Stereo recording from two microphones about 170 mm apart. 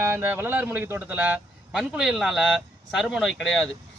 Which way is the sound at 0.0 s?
15° right (ahead or behind).